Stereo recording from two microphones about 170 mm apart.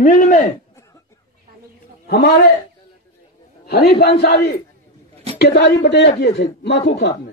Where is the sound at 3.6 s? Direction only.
70° left (ahead or behind).